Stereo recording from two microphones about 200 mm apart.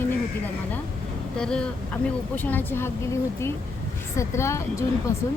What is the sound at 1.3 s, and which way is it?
A woman's voice, 5° left (ahead or behind).